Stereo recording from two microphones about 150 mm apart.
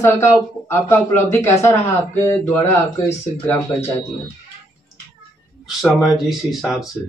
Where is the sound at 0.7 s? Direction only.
15° left (ahead or behind).